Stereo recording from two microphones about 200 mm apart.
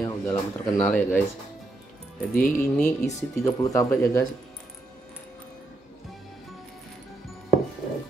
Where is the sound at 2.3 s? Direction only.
5° left (ahead or behind).